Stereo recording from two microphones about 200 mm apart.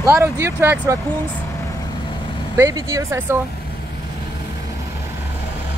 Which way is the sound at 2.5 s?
15° right (ahead or behind).